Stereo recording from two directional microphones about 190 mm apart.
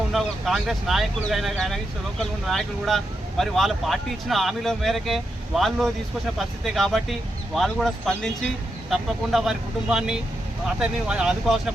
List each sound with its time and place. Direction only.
0.1 s speech: centre (ahead or behind)